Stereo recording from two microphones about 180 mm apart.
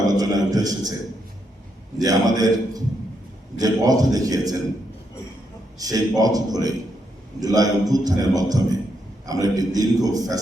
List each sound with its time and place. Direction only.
0.0 s a man's voice: 20° right (ahead or behind)
2.0 s a man's voice: 20° right (ahead or behind)
5.8 s a man's voice: 20° right (ahead or behind)